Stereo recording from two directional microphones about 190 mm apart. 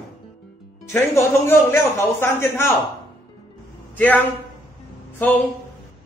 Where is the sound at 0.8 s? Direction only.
15° left (ahead or behind).